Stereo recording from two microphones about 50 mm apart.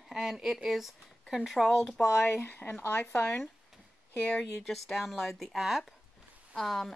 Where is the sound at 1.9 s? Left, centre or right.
Left.